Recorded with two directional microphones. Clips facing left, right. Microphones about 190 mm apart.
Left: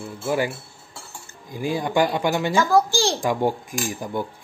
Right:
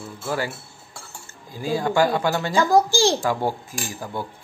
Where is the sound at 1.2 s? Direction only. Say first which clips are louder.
Left 2 dB; 15° left (ahead or behind).